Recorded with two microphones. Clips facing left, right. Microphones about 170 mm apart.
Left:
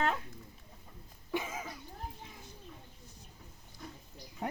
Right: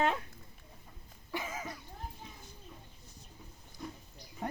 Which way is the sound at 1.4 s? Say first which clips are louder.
Even; 20° left (ahead or behind).